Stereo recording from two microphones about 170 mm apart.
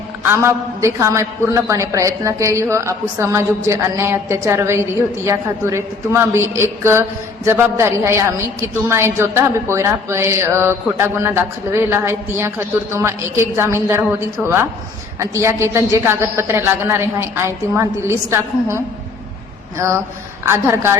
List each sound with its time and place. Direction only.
0.2 s a man's voice: 15° right (ahead or behind)
19.8 s a man's voice: 15° right (ahead or behind)